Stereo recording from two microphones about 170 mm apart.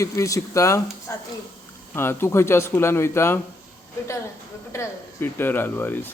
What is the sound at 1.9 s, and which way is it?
Speech, 15° left (ahead or behind).